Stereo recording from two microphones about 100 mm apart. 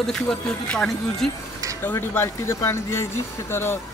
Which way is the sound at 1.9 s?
25° left (ahead or behind).